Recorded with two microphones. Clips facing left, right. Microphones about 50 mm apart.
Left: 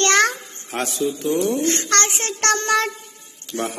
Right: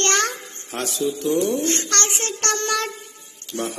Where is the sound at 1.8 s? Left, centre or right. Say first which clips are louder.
Left 3 dB; left.